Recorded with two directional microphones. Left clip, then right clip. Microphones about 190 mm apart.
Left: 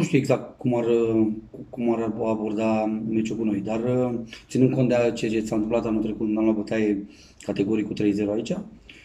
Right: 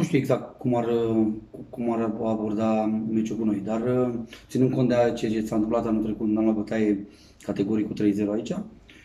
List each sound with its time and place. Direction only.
0.0 s a man's voice: 5° left (ahead or behind)